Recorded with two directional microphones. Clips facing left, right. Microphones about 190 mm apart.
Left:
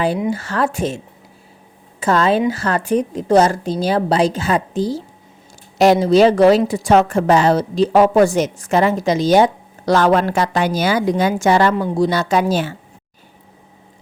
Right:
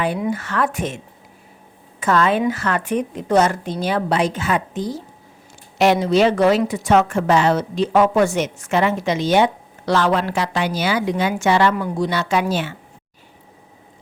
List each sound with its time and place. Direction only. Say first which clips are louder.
0.2 s a woman's voice: left 2 dB; 30° left (ahead or behind)
11.7 s a woman's voice: left 4 dB; 30° left (ahead or behind)